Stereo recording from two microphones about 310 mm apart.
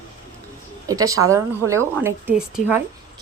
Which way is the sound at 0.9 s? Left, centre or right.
Centre.